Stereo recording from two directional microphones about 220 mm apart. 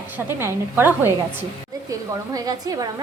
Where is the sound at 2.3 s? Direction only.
15° right (ahead or behind).